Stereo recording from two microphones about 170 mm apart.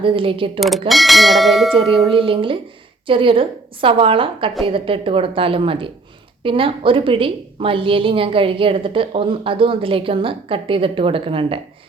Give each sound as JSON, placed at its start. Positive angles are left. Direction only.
{"t": 0.0, "sound": "a woman's voice", "side_deg": -30}
{"t": 0.9, "sound": "speech", "side_deg": 0}
{"t": 2.0, "sound": "a woman's voice", "side_deg": -30}